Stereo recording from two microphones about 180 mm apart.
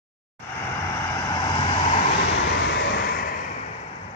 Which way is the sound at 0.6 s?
15° left (ahead or behind).